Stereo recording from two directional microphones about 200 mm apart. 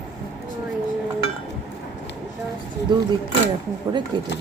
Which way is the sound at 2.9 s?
20° right (ahead or behind).